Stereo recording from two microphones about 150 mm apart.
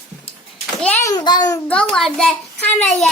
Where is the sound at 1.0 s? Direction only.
25° left (ahead or behind).